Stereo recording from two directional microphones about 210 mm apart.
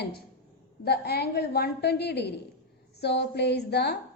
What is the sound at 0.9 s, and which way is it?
A woman's voice, 50° left (ahead or behind).